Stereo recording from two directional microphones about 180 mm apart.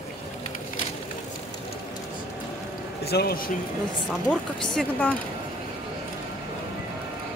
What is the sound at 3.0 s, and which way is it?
Speech, 60° left (ahead or behind).